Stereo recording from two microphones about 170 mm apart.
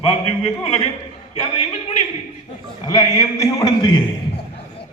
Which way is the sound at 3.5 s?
25° left (ahead or behind).